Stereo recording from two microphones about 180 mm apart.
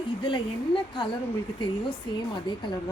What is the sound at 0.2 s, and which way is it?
Speech, 25° left (ahead or behind).